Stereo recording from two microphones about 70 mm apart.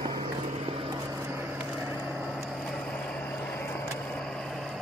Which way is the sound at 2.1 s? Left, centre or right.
Centre.